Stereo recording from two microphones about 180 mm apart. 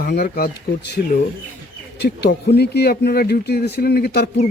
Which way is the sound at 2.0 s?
70° left (ahead or behind).